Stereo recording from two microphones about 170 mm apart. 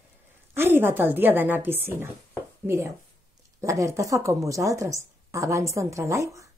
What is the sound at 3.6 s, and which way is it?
A woman's voice, 20° right (ahead or behind).